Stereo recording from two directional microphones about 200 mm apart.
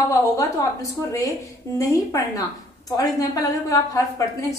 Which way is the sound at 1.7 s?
15° left (ahead or behind).